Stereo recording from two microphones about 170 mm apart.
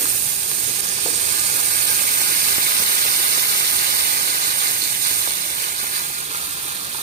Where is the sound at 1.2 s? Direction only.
45° right (ahead or behind); by 5.9 s 60° right (ahead or behind).